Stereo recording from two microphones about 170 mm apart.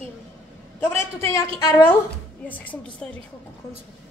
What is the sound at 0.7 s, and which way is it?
Speech, 15° left (ahead or behind).